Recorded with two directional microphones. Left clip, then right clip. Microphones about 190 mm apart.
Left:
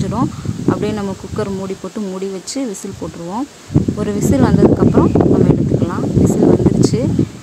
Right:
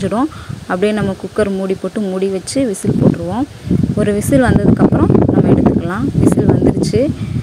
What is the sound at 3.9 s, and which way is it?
Speech, 15° right (ahead or behind).